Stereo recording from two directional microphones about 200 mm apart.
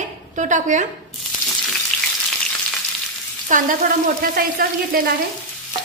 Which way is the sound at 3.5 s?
40° right (ahead or behind).